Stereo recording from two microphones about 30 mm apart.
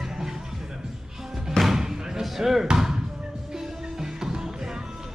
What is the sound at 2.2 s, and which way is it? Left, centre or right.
Basketball bounce, centre.